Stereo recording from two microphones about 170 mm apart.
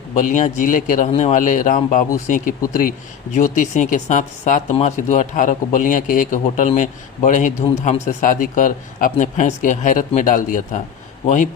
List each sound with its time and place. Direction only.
0.2 s a man's voice: 45° left (ahead or behind)